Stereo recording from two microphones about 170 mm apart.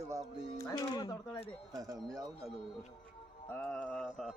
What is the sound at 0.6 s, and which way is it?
Speech, 20° left (ahead or behind).